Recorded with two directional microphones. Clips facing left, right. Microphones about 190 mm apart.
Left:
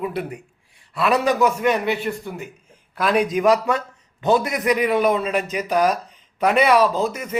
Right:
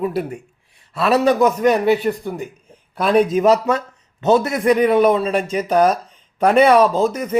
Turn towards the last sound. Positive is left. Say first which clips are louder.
# right 4 dB
turn(degrees=-35)  # may be behind; listen again after turning